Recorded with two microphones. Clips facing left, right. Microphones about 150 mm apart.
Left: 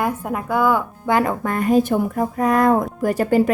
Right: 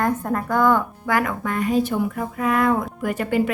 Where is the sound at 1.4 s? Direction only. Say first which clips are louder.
Left 4 dB; 45° left (ahead or behind).